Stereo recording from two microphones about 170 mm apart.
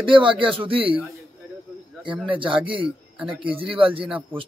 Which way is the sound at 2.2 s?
30° right (ahead or behind).